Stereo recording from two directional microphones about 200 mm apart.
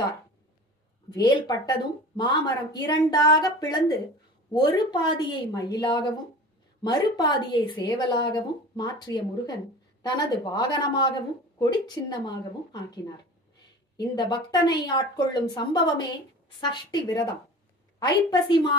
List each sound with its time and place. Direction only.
1.1 s speech: 20° left (ahead or behind)
10.0 s speech: 20° left (ahead or behind)